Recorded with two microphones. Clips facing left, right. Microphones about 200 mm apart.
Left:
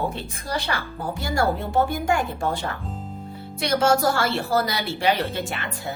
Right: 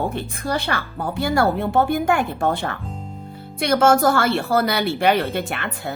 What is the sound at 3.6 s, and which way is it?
A woman's voice, 55° right (ahead or behind).